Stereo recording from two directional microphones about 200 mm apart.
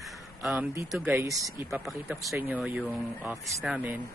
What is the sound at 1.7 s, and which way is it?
Speech, centre (ahead or behind).